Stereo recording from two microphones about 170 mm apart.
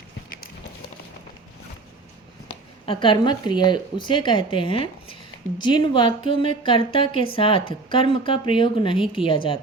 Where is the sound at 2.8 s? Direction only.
30° left (ahead or behind).